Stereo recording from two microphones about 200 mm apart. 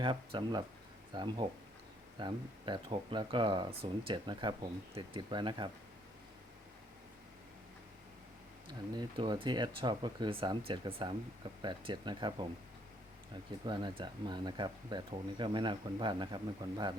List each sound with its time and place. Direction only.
0.0 s speech: 25° right (ahead or behind)
8.6 s speech: 20° right (ahead or behind)
13.7 s speech: 25° right (ahead or behind)